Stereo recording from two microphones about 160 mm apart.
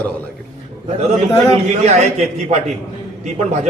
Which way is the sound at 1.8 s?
45° right (ahead or behind).